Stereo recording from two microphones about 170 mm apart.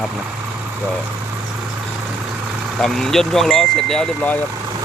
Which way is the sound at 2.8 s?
5° left (ahead or behind).